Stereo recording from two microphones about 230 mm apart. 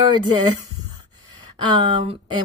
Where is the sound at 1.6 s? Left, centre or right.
Centre.